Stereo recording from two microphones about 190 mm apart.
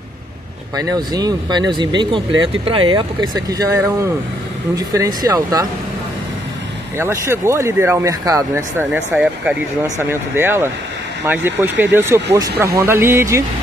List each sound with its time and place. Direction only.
0.7 s speech: 20° right (ahead or behind)
7.0 s speech: 15° right (ahead or behind)